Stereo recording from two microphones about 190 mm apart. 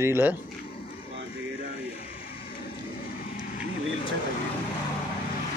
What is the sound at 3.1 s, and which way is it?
Vehicle, 45° left (ahead or behind).